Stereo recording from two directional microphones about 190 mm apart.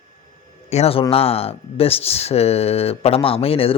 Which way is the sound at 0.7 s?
30° left (ahead or behind).